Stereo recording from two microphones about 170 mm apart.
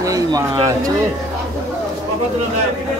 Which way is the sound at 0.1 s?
20° right (ahead or behind).